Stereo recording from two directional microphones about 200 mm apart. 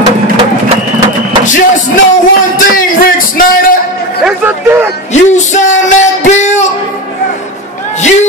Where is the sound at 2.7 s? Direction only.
45° left (ahead or behind).